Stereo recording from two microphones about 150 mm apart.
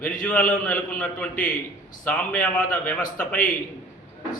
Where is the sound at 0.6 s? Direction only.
10° left (ahead or behind).